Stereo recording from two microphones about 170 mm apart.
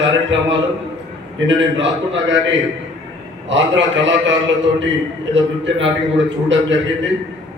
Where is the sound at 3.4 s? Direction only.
90° right.